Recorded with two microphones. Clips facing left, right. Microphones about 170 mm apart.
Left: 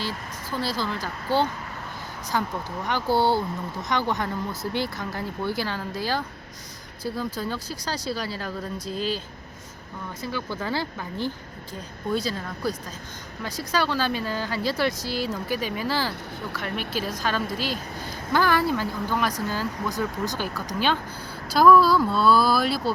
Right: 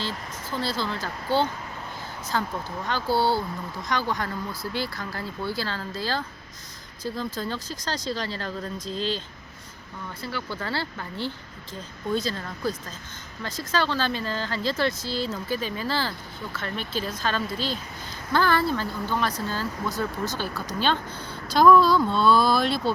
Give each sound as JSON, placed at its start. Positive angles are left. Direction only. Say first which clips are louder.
{"t": 0.5, "sound": "speech", "louder": "left 1 dB", "side_deg": 10}